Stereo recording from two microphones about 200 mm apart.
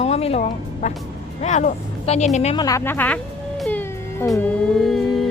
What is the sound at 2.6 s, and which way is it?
Speech, 15° left (ahead or behind).